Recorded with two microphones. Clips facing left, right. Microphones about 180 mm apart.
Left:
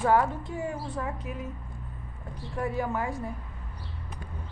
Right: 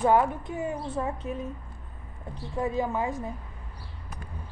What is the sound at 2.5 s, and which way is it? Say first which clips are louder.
Speech: right 2 dB; 20° right (ahead or behind).